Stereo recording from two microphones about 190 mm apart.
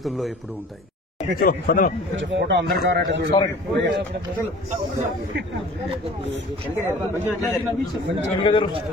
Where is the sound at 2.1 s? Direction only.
70° right (ahead or behind).